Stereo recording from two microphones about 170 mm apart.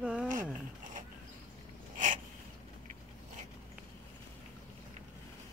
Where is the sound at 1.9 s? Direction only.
50° right (ahead or behind).